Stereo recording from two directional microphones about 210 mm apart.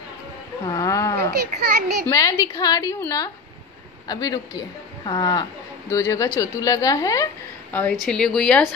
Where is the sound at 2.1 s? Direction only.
15° left (ahead or behind).